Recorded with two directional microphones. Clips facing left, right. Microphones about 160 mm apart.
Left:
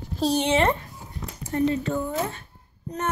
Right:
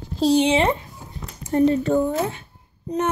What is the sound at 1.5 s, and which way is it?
Speech, 35° right (ahead or behind).